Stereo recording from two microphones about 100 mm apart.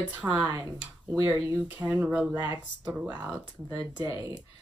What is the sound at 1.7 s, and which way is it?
Speech, 15° right (ahead or behind).